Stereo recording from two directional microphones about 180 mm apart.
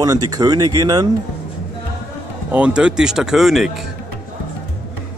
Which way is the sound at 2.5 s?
5° right (ahead or behind).